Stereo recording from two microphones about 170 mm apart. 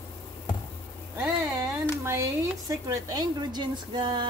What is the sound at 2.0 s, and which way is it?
Speech, 15° right (ahead or behind).